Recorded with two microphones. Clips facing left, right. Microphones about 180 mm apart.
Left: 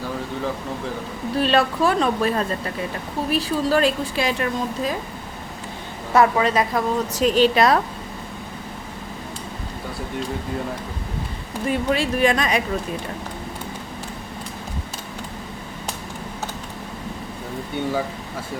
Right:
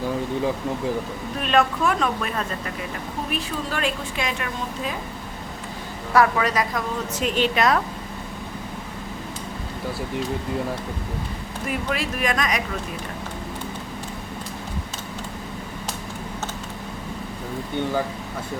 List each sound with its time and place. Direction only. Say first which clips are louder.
1.4 s a woman's voice: left 2 dB; 30° left (ahead or behind)
6.1 s a woman's voice: left 2 dB; 25° left (ahead or behind)
11.7 s speech: left 5 dB; 30° left (ahead or behind)